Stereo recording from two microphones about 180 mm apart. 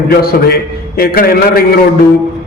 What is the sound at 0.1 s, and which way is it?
A man's voice, 60° left (ahead or behind).